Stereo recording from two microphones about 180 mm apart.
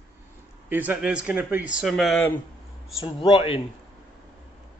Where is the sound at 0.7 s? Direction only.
10° right (ahead or behind).